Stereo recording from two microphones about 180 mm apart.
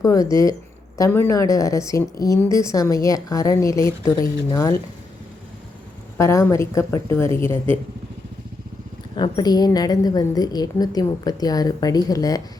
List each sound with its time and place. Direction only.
0.0 s a woman's voice: 20° left (ahead or behind)
6.1 s speech: 15° left (ahead or behind)
9.1 s a woman's voice: 25° left (ahead or behind)